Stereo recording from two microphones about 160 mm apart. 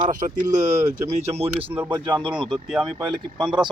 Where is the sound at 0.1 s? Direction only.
55° right (ahead or behind).